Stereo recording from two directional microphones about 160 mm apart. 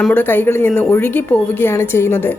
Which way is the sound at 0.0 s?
10° left (ahead or behind).